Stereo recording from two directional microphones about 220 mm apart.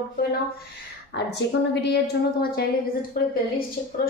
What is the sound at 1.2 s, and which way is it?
A woman's voice, 50° left (ahead or behind).